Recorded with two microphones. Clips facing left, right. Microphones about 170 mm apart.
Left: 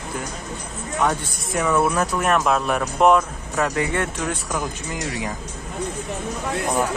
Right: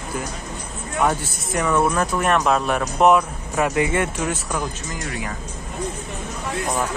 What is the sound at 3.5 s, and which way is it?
Speech, 15° right (ahead or behind).